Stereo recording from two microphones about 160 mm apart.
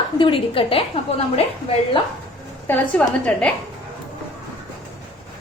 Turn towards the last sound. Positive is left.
turn(degrees=10)  # may be behind; listen again after turning